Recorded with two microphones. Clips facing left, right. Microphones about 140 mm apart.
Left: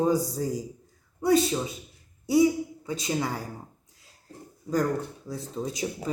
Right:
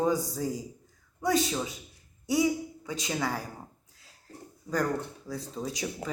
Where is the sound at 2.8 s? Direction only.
25° left (ahead or behind).